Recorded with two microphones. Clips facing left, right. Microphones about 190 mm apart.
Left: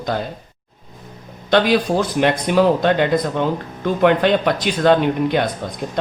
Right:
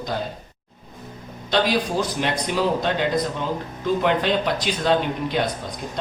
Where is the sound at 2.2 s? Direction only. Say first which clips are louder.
Left 11 dB; 60° left (ahead or behind).